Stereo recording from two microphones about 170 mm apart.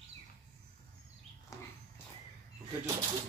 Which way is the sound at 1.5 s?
20° left (ahead or behind).